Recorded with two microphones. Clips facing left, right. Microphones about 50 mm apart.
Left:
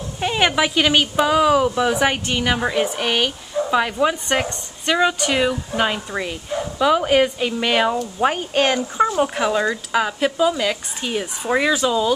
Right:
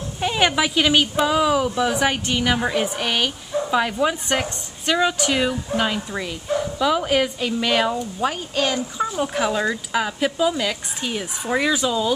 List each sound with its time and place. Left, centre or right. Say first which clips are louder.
0.2 s speech: left 1 dB; centre
8.2 s speech: left 5 dB; left
9.4 s speech: left 2 dB; centre